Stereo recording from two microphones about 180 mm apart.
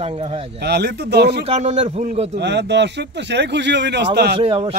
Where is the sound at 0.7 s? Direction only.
65° right (ahead or behind).